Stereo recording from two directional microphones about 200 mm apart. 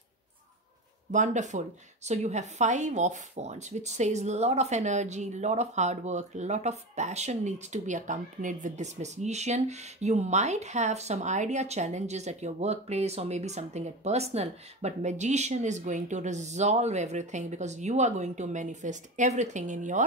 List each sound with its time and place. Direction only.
1.1 s speech: 40° right (ahead or behind)